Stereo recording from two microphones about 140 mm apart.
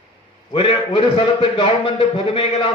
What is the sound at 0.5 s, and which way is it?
A man's voice, 35° left (ahead or behind).